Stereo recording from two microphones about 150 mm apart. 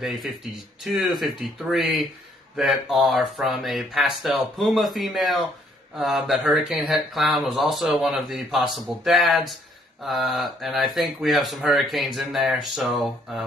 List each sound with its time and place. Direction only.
0.0 s speech: centre (ahead or behind)